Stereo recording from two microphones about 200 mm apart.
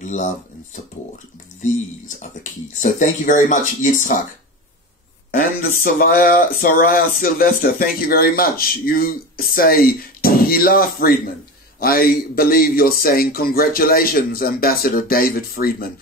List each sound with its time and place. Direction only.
0.0 s speech: 40° left (ahead or behind)
2.8 s speech: 40° left (ahead or behind)
5.3 s speech: 45° left (ahead or behind)